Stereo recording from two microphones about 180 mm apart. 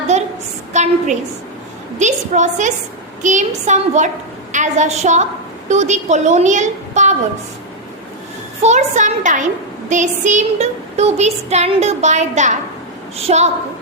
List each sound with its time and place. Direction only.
0.1 s a sound: 40° right (ahead or behind)
0.7 s a woman's voice: 40° right (ahead or behind)
2.0 s child singing: 40° right (ahead or behind)
4.5 s a woman's voice: 40° right (ahead or behind)
8.6 s a woman's voice: 40° right (ahead or behind)
9.9 s child singing: 45° right (ahead or behind)